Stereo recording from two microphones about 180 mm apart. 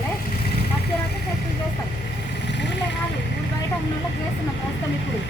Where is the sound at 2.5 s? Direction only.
75° left (ahead or behind).